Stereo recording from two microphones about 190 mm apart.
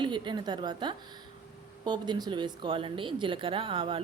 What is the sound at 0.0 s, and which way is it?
Speech, 25° right (ahead or behind).